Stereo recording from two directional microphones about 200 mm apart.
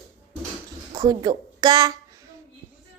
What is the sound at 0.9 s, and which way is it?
A woman's voice, 20° right (ahead or behind).